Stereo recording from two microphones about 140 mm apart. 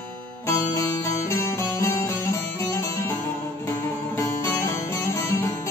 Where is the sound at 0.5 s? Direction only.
25° left (ahead or behind).